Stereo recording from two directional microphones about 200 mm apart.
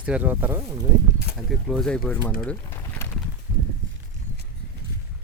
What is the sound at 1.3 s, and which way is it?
Speech, centre (ahead or behind).